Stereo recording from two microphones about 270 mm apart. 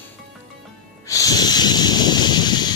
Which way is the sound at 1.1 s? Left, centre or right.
Centre.